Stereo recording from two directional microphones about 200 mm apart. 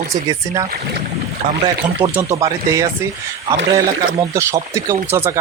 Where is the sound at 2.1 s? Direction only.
15° right (ahead or behind).